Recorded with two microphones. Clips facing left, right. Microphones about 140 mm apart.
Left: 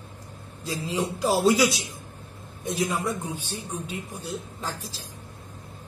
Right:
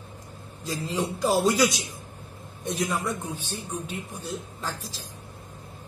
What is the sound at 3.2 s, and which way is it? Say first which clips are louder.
Speech: left 1 dB; 10° left (ahead or behind).